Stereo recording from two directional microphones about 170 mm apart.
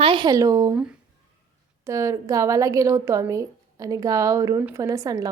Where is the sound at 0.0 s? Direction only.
30° right (ahead or behind).